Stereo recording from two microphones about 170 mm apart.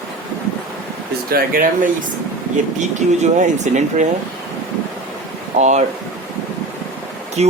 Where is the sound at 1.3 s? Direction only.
60° right (ahead or behind).